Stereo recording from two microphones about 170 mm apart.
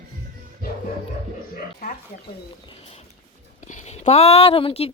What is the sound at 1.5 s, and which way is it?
Speech, 55° left (ahead or behind).